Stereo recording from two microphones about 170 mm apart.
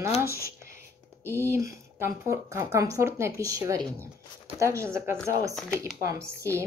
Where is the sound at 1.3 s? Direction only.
15° right (ahead or behind).